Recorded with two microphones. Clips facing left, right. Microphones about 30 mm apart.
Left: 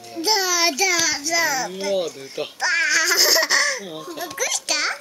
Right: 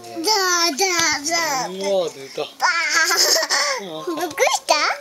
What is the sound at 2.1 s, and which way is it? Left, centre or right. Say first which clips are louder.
Speech: right 2 dB; centre.